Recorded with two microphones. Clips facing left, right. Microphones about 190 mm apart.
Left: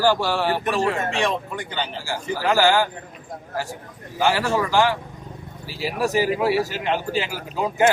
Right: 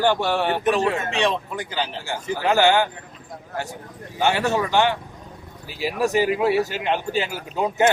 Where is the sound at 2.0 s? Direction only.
20° right (ahead or behind).